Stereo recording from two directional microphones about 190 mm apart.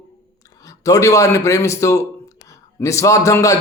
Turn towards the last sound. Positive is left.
turn(degrees=15)  # may be behind; listen again after turning